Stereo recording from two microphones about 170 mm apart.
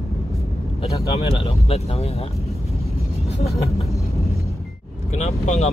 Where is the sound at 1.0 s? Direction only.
35° left (ahead or behind).